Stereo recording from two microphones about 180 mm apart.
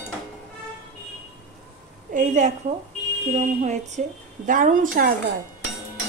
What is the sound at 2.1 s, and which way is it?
A woman's voice, 45° right (ahead or behind).